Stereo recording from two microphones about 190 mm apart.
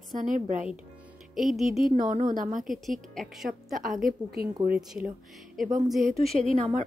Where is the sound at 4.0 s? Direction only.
50° right (ahead or behind).